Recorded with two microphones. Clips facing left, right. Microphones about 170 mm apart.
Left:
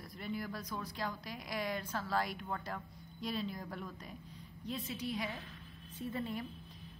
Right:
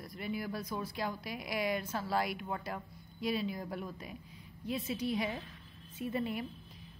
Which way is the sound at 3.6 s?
20° right (ahead or behind).